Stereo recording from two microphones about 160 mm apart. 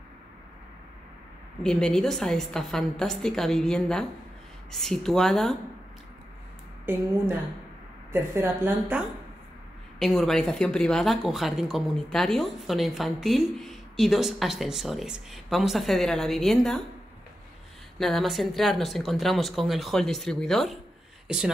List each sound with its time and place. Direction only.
1.6 s speech: 5° left (ahead or behind)
6.9 s a woman's voice: 15° right (ahead or behind)
8.1 s a woman's voice: 15° right (ahead or behind)
9.9 s speech: centre (ahead or behind)
17.9 s speech: centre (ahead or behind)